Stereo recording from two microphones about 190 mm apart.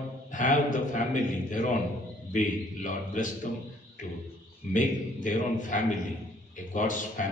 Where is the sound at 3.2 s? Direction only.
45° left (ahead or behind).